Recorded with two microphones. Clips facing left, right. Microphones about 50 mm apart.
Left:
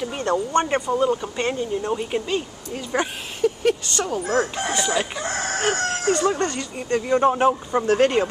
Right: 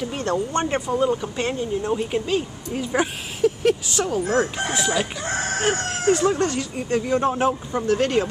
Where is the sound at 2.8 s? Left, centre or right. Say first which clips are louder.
Right 2 dB; centre.